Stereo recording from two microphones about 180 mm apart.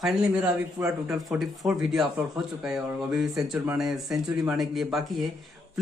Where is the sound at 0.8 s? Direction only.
15° right (ahead or behind).